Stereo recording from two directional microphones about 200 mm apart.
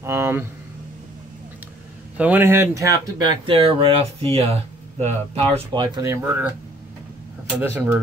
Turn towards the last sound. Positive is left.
turn(degrees=-10)  # may be behind; listen again after turning